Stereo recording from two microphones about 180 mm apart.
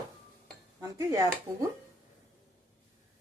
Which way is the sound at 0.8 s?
20° right (ahead or behind).